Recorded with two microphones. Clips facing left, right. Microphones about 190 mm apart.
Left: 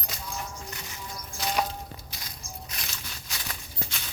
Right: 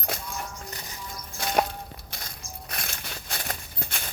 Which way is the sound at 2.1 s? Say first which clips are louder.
Right 1 dB; 55° right (ahead or behind).